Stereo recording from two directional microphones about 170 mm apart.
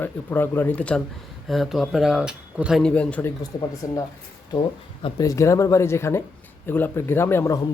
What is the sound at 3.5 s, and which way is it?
Speech, 25° left (ahead or behind).